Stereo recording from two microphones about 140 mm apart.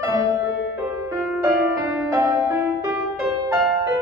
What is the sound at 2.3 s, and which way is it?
Music, 20° right (ahead or behind).